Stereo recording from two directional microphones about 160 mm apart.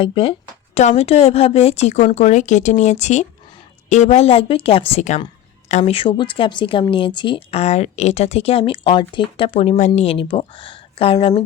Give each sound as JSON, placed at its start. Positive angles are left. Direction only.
{"t": 0.0, "sound": "a woman's voice", "side_deg": 35}